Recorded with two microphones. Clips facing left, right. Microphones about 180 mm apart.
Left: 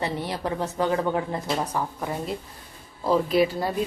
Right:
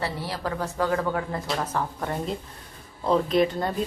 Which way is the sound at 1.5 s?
10° left (ahead or behind).